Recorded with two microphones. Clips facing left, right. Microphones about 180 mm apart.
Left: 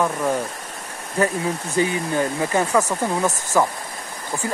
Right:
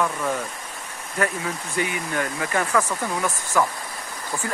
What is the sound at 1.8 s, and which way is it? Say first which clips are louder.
Speech: left 5 dB; 30° left (ahead or behind).